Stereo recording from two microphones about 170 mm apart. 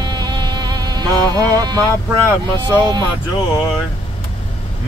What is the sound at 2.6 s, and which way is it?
Speech, 25° right (ahead or behind).